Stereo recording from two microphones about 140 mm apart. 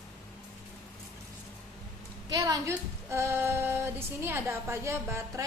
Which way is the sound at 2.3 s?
25° right (ahead or behind).